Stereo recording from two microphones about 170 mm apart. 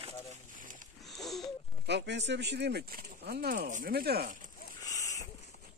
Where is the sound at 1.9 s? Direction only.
90° right; by 4.5 s 55° right (ahead or behind).